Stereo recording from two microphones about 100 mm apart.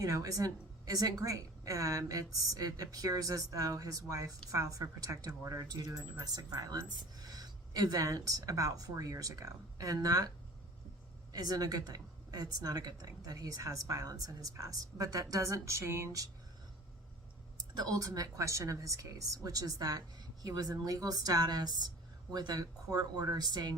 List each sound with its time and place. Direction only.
0.0 s speech: 35° right (ahead or behind)
11.3 s speech: 40° right (ahead or behind)
17.7 s speech: 40° right (ahead or behind)